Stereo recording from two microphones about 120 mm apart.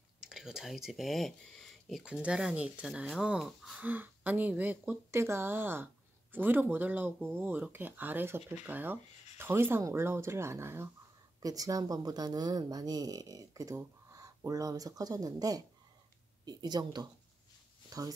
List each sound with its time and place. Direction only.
0.2 s speech: 5° right (ahead or behind)
3.8 s speech: 15° right (ahead or behind); by 18.1 s 30° right (ahead or behind)